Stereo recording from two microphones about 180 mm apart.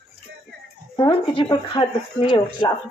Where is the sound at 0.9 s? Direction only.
25° left (ahead or behind).